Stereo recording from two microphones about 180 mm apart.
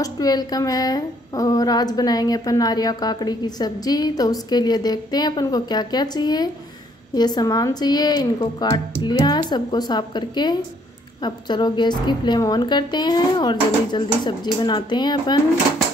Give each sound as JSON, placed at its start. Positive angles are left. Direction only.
{"t": 0.0, "sound": "a woman's voice", "side_deg": 20}